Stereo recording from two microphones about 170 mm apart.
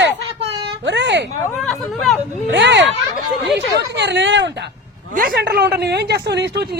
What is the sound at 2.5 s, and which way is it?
Speech, 90° right.